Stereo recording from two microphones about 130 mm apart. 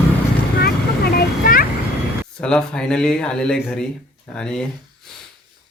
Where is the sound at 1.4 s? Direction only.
90° left.